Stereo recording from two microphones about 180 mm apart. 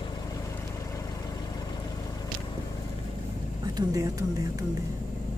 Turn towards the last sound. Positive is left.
turn(degrees=-20)  # may be behind; listen again after turning